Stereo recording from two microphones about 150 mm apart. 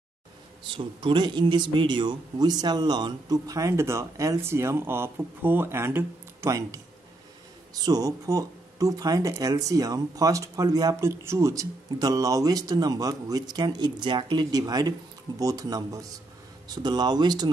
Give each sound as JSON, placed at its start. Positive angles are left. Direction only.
{"t": 0.7, "sound": "speech", "side_deg": -35}